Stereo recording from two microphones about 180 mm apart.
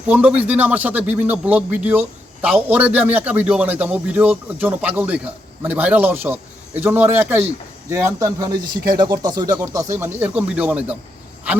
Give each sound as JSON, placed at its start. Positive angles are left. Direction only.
{"t": 0.1, "sound": "speech", "side_deg": -5}